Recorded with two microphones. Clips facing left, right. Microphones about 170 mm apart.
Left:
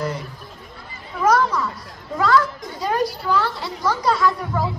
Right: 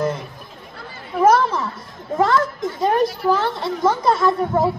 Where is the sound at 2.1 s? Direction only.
25° right (ahead or behind).